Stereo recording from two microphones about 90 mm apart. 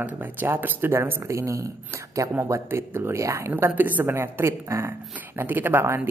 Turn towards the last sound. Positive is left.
turn(degrees=-25)  # may be behind; listen again after turning